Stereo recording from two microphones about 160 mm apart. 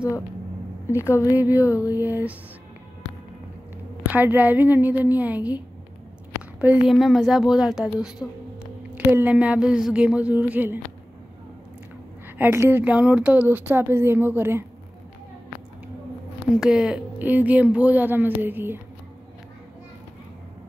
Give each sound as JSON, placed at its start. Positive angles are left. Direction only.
{"t": 0.8, "sound": "a woman's voice", "side_deg": 15}
{"t": 1.2, "sound": "speech", "side_deg": -10}
{"t": 4.1, "sound": "speech", "side_deg": -10}
{"t": 6.6, "sound": "a woman's voice", "side_deg": -10}
{"t": 12.4, "sound": "speech", "side_deg": -15}
{"t": 16.5, "sound": "speech", "side_deg": -5}